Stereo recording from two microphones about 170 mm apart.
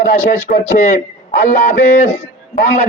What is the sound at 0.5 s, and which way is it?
A man's voice, 50° left (ahead or behind).